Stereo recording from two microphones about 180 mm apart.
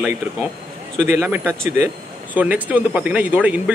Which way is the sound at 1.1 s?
10° right (ahead or behind).